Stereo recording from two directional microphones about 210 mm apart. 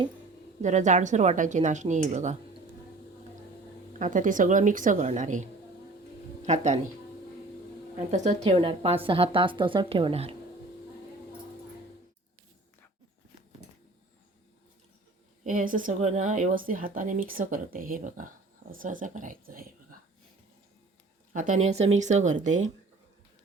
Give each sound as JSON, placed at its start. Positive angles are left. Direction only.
{"t": 0.6, "sound": "speech", "side_deg": -35}
{"t": 3.9, "sound": "speech", "side_deg": -35}
{"t": 8.1, "sound": "a woman's voice", "side_deg": -35}
{"t": 15.4, "sound": "speech", "side_deg": -40}
{"t": 21.3, "sound": "speech", "side_deg": -35}